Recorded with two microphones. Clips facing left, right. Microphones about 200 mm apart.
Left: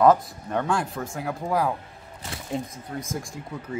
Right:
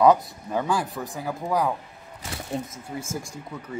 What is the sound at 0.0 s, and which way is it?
Speech, centre (ahead or behind).